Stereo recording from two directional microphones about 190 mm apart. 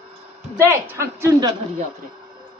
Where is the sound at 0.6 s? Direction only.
15° right (ahead or behind).